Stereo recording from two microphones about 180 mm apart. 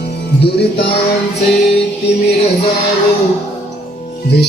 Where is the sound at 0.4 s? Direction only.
65° left (ahead or behind).